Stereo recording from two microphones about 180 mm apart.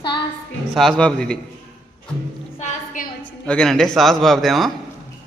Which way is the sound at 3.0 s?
50° left (ahead or behind).